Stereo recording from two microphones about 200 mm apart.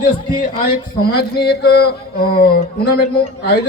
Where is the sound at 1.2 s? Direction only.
55° left (ahead or behind).